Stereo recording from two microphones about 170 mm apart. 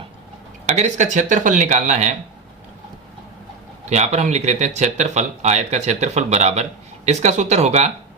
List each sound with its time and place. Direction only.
0.6 s speech: 40° right (ahead or behind)
3.8 s speech: 45° right (ahead or behind)